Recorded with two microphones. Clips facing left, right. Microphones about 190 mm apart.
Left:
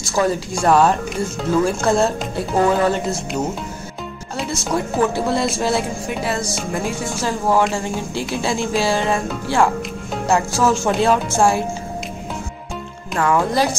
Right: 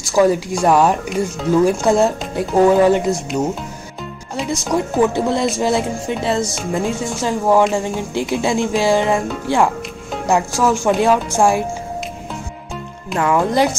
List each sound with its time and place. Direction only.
0.0 s speech: 15° right (ahead or behind)
4.7 s speech: 20° right (ahead or behind)